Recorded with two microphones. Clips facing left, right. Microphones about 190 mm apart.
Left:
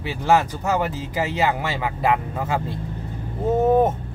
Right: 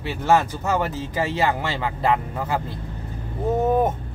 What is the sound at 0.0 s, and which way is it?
Speech, 15° left (ahead or behind).